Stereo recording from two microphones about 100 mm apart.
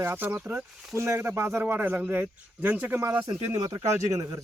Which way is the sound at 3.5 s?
40° right (ahead or behind).